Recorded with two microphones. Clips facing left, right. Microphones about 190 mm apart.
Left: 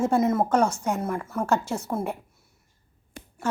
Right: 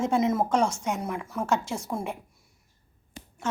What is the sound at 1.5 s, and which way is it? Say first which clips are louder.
Speech: left 2 dB; 60° left (ahead or behind).